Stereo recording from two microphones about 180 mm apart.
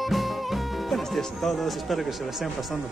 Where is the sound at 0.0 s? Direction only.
Centre (ahead or behind).